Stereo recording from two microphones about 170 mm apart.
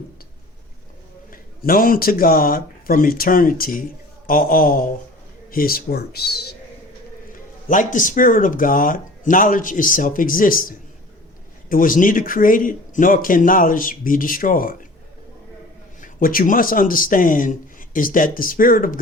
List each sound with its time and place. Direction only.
1.3 s a man's voice: 55° left (ahead or behind)
7.7 s speech: 50° left (ahead or behind)
16.0 s speech: 55° left (ahead or behind)